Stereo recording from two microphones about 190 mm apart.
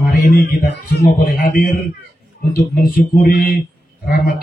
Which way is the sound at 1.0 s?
50° left (ahead or behind).